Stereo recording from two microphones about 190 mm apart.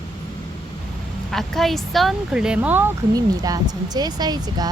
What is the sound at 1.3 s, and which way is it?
Speech, centre (ahead or behind).